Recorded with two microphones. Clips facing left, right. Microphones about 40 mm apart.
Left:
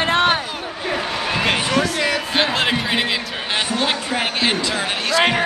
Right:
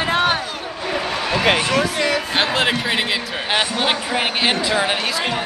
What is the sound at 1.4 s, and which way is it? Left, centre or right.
Speech, centre.